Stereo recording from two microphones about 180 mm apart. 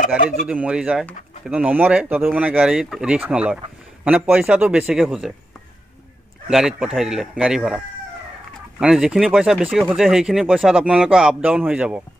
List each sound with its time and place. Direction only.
0.2 s speech: 45° left (ahead or behind)
0.5 s speech: 5° right (ahead or behind)
6.5 s speech: 5° right (ahead or behind)